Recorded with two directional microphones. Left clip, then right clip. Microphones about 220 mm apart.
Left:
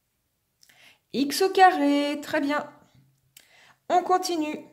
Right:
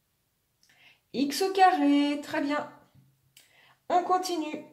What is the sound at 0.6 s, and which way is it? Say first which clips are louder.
A woman's voice: left 4 dB; 50° left (ahead or behind).